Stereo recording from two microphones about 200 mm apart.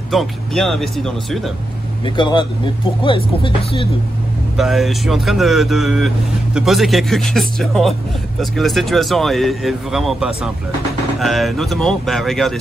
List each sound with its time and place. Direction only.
0.1 s speech: centre (ahead or behind)
2.0 s speech: 20° left (ahead or behind)
4.6 s speech: centre (ahead or behind)